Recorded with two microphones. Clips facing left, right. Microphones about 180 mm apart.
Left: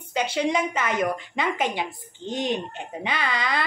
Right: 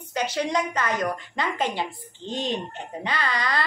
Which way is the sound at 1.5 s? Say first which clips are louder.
Even; 15° left (ahead or behind).